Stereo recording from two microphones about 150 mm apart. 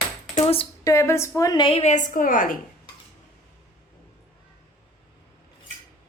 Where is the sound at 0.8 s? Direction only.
20° left (ahead or behind); by 2.5 s 65° left (ahead or behind).